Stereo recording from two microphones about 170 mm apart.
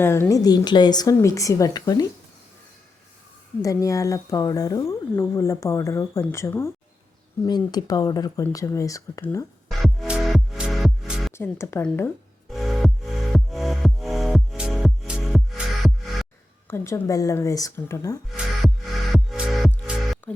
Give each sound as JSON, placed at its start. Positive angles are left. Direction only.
{"t": 0.0, "sound": "speech", "side_deg": 15}
{"t": 3.6, "sound": "speech", "side_deg": 20}
{"t": 9.6, "sound": "music", "side_deg": 0}
{"t": 11.3, "sound": "speech", "side_deg": 15}
{"t": 12.5, "sound": "music", "side_deg": 0}
{"t": 16.6, "sound": "speech", "side_deg": 15}
{"t": 19.1, "sound": "music", "side_deg": 0}
{"t": 20.2, "sound": "music", "side_deg": 10}